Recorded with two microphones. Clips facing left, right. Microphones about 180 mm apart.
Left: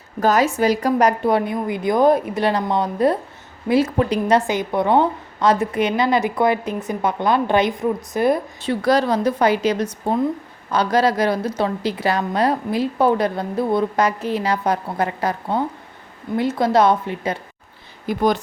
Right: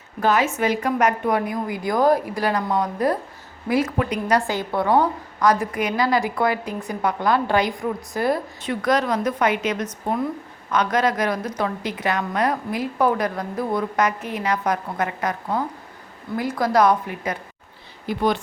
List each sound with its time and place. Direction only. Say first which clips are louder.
0.2 s a woman's voice: left 3 dB; 40° left (ahead or behind); by 8.7 s 20° left (ahead or behind)
8.7 s a woman's voice: left 3 dB; 30° left (ahead or behind)
18.0 s speech: left 3 dB; 45° left (ahead or behind)